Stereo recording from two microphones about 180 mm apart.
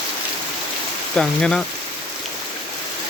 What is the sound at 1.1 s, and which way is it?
Speech, 5° left (ahead or behind).